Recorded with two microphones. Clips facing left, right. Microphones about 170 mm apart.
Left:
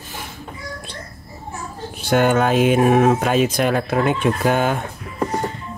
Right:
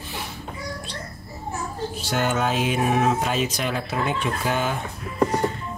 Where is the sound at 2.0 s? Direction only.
55° left (ahead or behind).